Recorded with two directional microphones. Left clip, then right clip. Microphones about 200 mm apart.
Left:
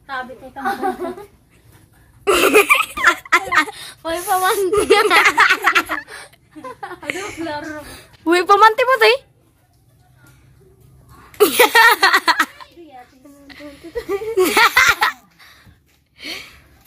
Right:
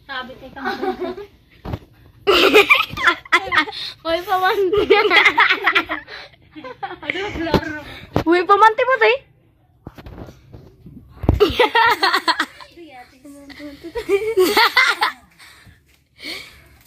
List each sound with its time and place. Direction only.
0.0 s a woman's voice: 15° left (ahead or behind)
2.2 s laughter: 5° left (ahead or behind)
3.7 s speech: 35° left (ahead or behind)
4.2 s speech: 20° left (ahead or behind)
4.6 s speech: 10° left (ahead or behind)
6.0 s a sound: 15° right (ahead or behind)
6.6 s speech: 25° right (ahead or behind)
7.1 s speech: 10° left (ahead or behind)
11.3 s speech: 5° left (ahead or behind)
13.5 s a sound: centre (ahead or behind)
14.3 s speech: centre (ahead or behind)
16.2 s a sound: centre (ahead or behind)